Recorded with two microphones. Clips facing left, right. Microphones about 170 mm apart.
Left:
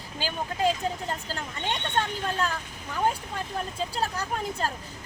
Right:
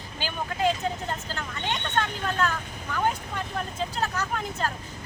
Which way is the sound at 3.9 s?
35° left (ahead or behind).